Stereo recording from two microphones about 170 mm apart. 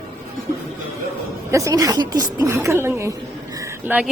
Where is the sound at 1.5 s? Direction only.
20° right (ahead or behind).